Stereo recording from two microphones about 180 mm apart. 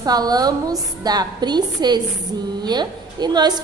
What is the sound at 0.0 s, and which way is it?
A woman's voice, 20° right (ahead or behind).